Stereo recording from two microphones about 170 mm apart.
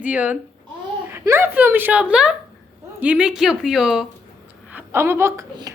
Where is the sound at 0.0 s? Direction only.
10° right (ahead or behind).